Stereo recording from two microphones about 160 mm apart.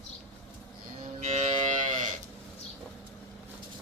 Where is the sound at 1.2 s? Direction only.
45° right (ahead or behind).